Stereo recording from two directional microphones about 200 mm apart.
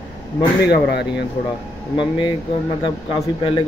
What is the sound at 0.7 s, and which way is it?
Speech, 55° left (ahead or behind).